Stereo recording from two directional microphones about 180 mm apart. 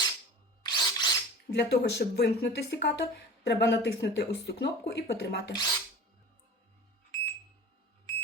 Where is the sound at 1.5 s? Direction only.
65° left (ahead or behind).